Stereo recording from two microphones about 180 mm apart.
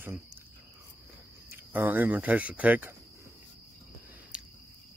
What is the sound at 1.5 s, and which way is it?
A man's voice, 10° right (ahead or behind).